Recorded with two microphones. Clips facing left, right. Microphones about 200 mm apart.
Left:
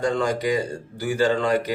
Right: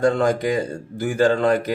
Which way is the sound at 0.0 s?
50° right (ahead or behind).